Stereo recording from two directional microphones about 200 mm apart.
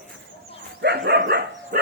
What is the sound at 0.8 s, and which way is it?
Dog, 55° right (ahead or behind).